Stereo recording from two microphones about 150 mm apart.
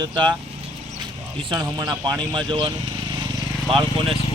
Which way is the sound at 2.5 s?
30° right (ahead or behind).